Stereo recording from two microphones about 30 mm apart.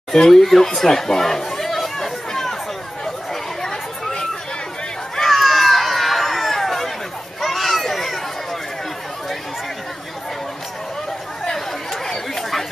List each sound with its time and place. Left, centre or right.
0.1 s speech: centre
5.1 s a sound: centre
11.9 s chatter: centre